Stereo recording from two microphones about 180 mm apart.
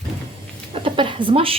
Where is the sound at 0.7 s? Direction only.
30° right (ahead or behind).